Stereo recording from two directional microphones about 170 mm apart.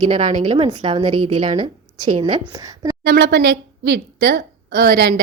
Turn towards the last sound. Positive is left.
turn(degrees=-80)